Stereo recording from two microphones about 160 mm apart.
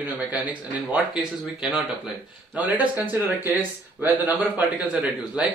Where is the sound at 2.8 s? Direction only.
10° right (ahead or behind).